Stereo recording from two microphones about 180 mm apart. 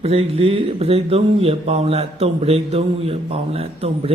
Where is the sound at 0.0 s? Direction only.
30° right (ahead or behind).